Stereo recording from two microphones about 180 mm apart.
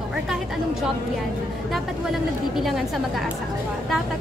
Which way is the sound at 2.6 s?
Centre (ahead or behind).